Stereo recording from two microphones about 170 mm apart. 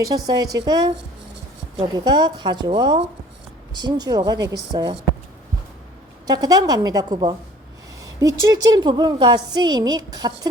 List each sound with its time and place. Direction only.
0.0 s a woman's voice: 20° right (ahead or behind)
6.2 s a woman's voice: 20° right (ahead or behind)